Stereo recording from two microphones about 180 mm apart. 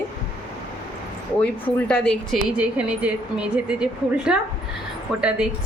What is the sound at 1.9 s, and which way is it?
A woman's voice, 5° left (ahead or behind).